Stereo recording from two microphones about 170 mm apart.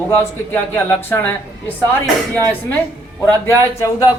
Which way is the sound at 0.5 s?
10° left (ahead or behind).